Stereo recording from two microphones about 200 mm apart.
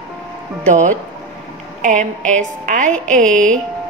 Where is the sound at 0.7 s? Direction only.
40° right (ahead or behind).